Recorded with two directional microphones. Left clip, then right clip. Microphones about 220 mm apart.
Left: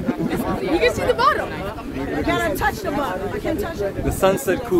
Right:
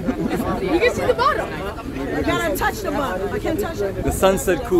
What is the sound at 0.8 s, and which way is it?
Speech, 35° left (ahead or behind).